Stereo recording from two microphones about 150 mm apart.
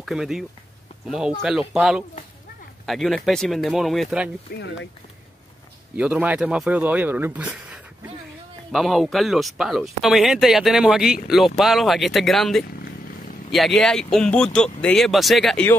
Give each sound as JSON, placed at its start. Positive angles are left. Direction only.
{"t": 0.0, "sound": "speech", "side_deg": 0}
{"t": 4.5, "sound": "speech", "side_deg": 90}
{"t": 5.9, "sound": "speech", "side_deg": -5}
{"t": 12.6, "sound": "vehicle", "side_deg": 85}
{"t": 13.5, "sound": "speech", "side_deg": 0}